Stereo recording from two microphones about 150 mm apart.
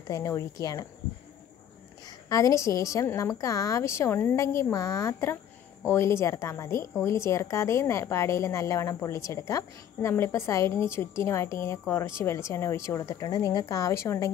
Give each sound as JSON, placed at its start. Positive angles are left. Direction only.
{"t": 0.1, "sound": "a woman's voice", "side_deg": 20}
{"t": 2.0, "sound": "a woman's voice", "side_deg": 25}